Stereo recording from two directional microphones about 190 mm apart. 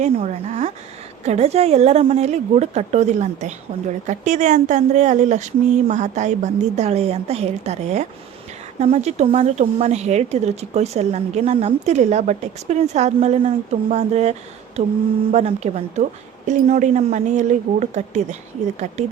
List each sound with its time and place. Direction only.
0.0 s a woman's voice: 40° right (ahead or behind)